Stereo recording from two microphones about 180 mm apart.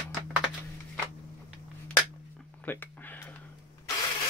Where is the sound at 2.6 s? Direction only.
10° left (ahead or behind).